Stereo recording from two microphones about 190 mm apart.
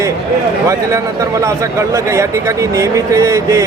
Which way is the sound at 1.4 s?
15° right (ahead or behind).